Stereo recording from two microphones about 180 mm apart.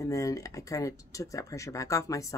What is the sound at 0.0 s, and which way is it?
Speech, 20° left (ahead or behind).